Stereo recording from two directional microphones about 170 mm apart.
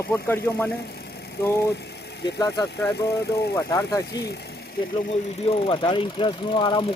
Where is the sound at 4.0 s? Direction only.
75° left (ahead or behind).